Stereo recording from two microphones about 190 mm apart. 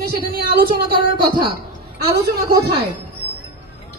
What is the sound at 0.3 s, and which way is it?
Speech, 50° right (ahead or behind).